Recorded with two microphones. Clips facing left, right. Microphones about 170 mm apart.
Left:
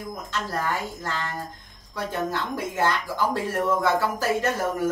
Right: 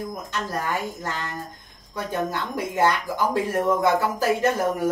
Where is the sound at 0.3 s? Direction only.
15° right (ahead or behind).